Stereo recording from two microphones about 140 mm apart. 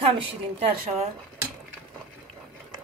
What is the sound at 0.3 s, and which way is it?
Speech, 40° right (ahead or behind).